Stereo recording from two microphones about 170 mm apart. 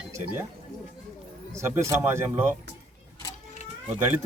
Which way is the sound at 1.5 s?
15° right (ahead or behind).